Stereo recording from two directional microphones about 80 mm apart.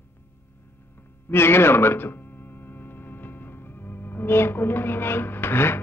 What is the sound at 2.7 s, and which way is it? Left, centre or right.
Music, left.